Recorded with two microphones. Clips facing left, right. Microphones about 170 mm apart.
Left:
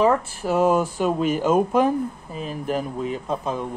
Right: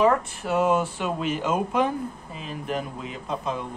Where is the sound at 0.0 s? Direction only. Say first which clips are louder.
Left 2 dB; 35° left (ahead or behind).